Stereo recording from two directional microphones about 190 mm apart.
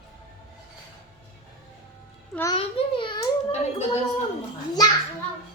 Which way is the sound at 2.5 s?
25° left (ahead or behind).